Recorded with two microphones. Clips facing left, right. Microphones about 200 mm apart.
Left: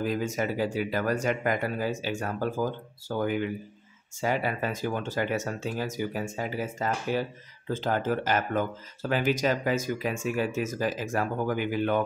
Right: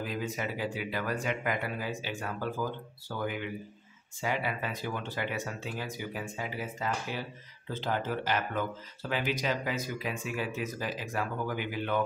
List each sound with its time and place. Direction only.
0.0 s speech: 45° left (ahead or behind)